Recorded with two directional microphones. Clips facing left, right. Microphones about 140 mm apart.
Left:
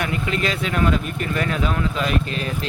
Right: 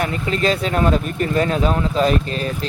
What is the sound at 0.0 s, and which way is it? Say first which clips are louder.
Speech: right 3 dB; 35° right (ahead or behind).